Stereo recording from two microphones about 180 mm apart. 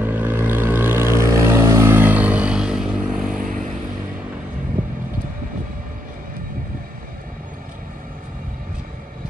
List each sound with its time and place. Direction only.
0.0 s vehicle: 10° right (ahead or behind)
3.3 s vehicle: 45° right (ahead or behind)